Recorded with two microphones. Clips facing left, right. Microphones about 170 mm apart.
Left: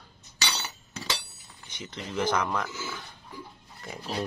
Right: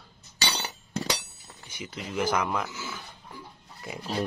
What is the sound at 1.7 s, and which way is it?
Speech, 10° right (ahead or behind).